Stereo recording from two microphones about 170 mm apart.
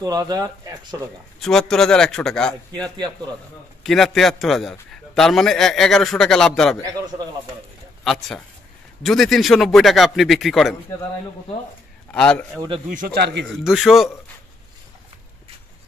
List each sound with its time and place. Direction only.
0.0 s speech: 20° right (ahead or behind)
1.4 s a man's voice: 5° left (ahead or behind)
3.8 s a man's voice: centre (ahead or behind)
8.0 s a man's voice: centre (ahead or behind)
12.1 s a man's voice: 5° left (ahead or behind)
12.9 s speech: 60° right (ahead or behind); by 13.5 s 85° right
13.5 s a man's voice: centre (ahead or behind)